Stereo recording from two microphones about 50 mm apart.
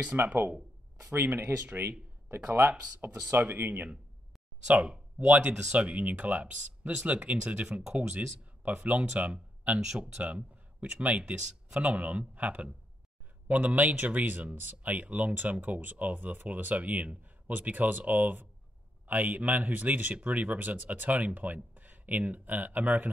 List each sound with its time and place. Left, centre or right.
0.1 s speech: right
1.1 s speech: right
2.3 s speech: right
4.6 s speech: centre; by 23.0 s right